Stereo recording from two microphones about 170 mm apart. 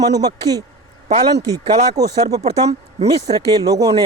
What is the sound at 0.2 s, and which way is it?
Speech, 20° right (ahead or behind).